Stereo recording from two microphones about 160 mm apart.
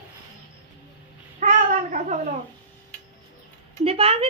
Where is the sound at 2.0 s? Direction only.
50° right (ahead or behind).